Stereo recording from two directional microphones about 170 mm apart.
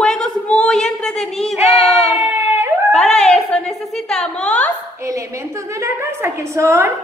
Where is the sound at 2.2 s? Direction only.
15° right (ahead or behind).